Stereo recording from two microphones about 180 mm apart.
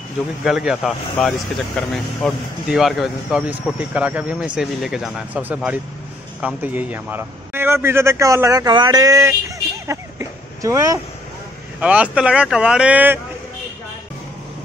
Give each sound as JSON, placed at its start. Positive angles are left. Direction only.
{"t": 0.4, "sound": "a man's voice", "side_deg": -5}
{"t": 9.8, "sound": "a sound", "side_deg": -15}
{"t": 11.8, "sound": "a man's voice", "side_deg": -5}